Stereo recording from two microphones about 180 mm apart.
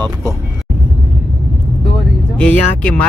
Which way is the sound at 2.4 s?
10° left (ahead or behind).